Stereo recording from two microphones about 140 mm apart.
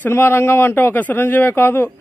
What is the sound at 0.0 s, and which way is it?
Speech, 15° left (ahead or behind).